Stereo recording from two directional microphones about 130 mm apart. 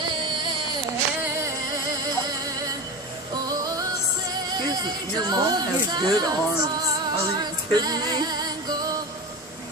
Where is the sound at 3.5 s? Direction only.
30° right (ahead or behind).